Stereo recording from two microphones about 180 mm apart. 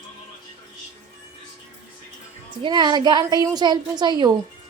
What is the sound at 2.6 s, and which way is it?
A woman's voice, 25° right (ahead or behind).